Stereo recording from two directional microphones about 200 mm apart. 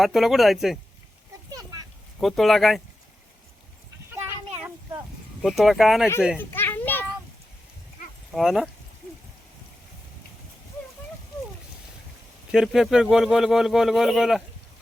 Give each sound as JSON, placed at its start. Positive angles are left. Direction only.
{"t": 0.0, "sound": "speech", "side_deg": 0}
{"t": 1.5, "sound": "a sound", "side_deg": -20}
{"t": 2.2, "sound": "speech", "side_deg": 0}
{"t": 5.4, "sound": "speech", "side_deg": 0}
{"t": 6.4, "sound": "children playing", "side_deg": 10}
{"t": 8.3, "sound": "speech", "side_deg": 0}
{"t": 12.5, "sound": "speech", "side_deg": -5}